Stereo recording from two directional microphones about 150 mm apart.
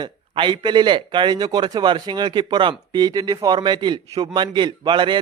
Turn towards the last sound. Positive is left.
turn(degrees=-30)  # may be behind; listen again after turning